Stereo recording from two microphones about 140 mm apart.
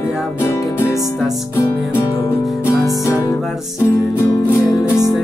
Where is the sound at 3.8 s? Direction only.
20° left (ahead or behind).